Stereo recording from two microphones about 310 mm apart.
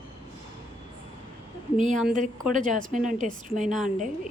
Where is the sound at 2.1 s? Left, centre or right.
Right.